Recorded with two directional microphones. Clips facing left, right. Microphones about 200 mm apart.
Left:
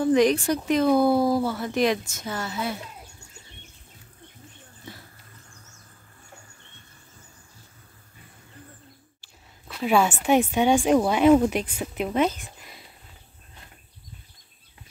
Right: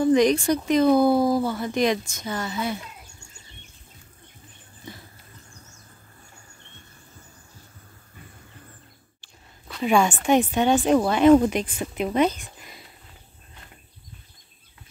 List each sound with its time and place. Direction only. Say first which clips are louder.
0.0 s speech: right 1 dB; 5° left (ahead or behind)
9.2 s speech: right 1 dB; 5° left (ahead or behind)